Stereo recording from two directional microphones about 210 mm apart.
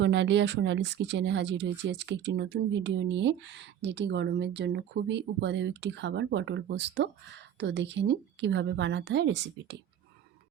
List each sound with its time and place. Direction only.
0.0 s speech: 55° right (ahead or behind)